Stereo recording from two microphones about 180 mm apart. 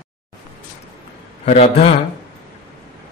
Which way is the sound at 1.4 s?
40° left (ahead or behind).